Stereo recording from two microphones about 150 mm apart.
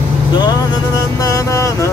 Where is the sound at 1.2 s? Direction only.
20° left (ahead or behind).